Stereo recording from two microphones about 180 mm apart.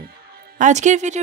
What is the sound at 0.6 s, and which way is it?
Speech, 40° right (ahead or behind).